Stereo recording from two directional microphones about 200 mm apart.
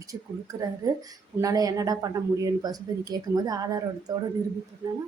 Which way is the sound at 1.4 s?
15° right (ahead or behind).